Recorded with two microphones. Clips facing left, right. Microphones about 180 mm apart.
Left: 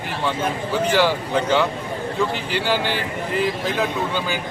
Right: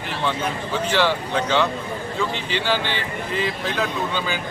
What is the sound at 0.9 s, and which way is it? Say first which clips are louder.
Speech: left 1 dB; 10° left (ahead or behind).